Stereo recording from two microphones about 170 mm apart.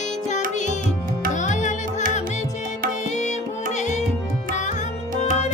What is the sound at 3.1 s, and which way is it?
Music, 45° left (ahead or behind).